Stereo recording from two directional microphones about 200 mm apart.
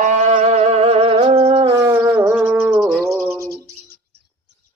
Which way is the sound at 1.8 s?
15° right (ahead or behind).